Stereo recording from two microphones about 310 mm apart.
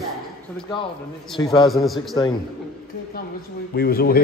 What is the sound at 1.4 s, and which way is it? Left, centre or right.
Speech, centre.